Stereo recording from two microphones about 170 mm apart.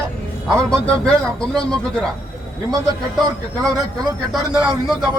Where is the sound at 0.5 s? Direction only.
5° left (ahead or behind).